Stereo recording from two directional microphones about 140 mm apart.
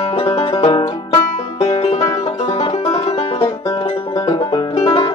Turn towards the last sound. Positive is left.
turn(degrees=35)  # may be behind; listen again after turning